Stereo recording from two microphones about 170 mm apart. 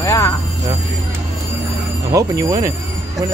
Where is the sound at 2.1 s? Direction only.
20° right (ahead or behind).